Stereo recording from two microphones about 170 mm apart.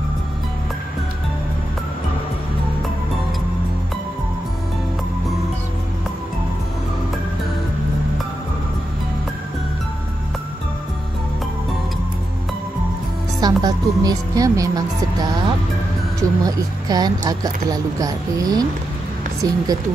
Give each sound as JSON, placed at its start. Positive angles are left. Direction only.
{"t": 13.4, "sound": "a woman's voice", "side_deg": -20}
{"t": 16.2, "sound": "speech", "side_deg": -20}